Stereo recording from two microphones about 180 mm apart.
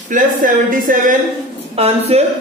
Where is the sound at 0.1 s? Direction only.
50° right (ahead or behind).